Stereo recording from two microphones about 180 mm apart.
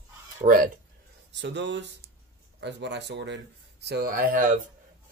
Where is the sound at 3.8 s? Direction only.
60° right (ahead or behind).